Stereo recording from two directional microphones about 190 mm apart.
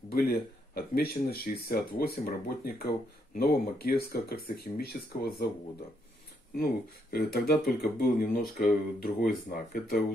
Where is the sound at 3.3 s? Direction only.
55° left (ahead or behind).